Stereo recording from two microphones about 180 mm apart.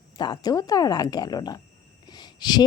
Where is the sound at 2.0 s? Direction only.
25° left (ahead or behind).